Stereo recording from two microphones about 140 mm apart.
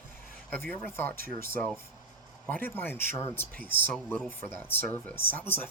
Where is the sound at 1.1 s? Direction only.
90° right.